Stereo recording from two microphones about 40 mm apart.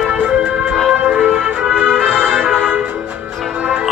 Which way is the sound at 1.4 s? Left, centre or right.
Right.